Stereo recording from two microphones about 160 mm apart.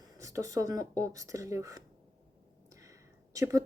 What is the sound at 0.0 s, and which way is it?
Speech, 20° right (ahead or behind).